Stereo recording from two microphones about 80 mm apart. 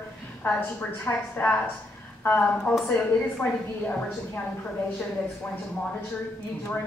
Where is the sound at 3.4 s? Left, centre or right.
Left.